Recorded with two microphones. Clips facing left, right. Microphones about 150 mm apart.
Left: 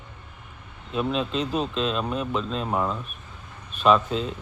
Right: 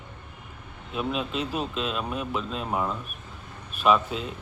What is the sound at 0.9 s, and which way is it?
Speech, 5° right (ahead or behind).